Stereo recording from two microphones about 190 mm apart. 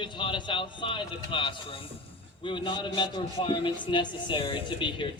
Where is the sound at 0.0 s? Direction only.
25° left (ahead or behind).